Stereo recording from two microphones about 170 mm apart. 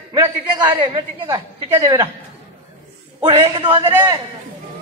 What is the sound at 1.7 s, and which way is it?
Speech, 15° right (ahead or behind).